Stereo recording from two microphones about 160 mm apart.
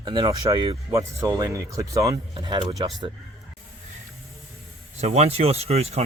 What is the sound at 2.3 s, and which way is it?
Speech, 30° right (ahead or behind).